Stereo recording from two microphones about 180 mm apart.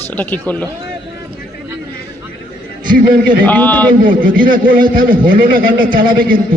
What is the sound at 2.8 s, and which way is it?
Speech, 50° right (ahead or behind).